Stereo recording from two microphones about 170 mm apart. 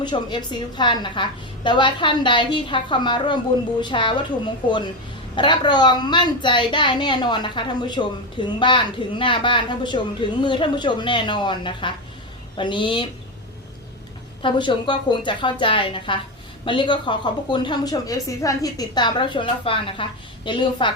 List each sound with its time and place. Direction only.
0.0 s a woman's voice: 25° left (ahead or behind)
5.3 s a woman's voice: 30° left (ahead or behind)
14.4 s a woman's voice: 30° left (ahead or behind)